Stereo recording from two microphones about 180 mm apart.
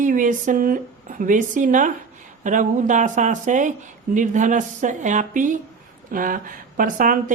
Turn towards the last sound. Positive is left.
turn(degrees=-45)  # may be behind; listen again after turning